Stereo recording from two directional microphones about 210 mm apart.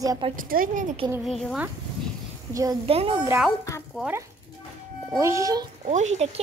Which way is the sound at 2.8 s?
25° right (ahead or behind).